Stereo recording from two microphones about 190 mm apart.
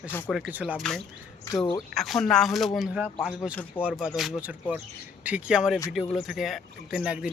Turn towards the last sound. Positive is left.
turn(degrees=-5)  # may be behind; listen again after turning